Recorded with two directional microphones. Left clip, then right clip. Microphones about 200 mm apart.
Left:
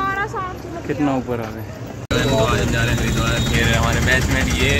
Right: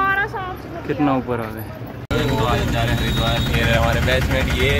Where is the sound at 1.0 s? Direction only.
10° right (ahead or behind).